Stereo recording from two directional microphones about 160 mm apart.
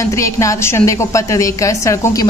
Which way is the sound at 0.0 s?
20° left (ahead or behind).